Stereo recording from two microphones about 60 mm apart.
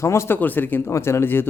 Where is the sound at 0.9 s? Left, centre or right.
Left.